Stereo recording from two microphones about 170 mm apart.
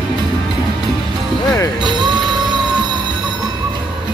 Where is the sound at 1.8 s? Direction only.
25° right (ahead or behind).